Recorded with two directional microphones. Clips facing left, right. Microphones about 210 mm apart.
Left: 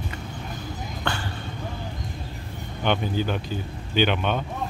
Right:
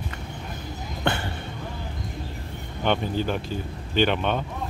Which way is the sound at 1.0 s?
20° right (ahead or behind).